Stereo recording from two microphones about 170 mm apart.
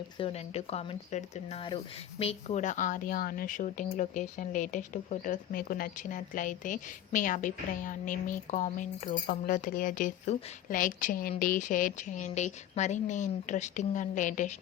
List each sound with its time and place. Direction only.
0.2 s a woman's voice: 35° left (ahead or behind)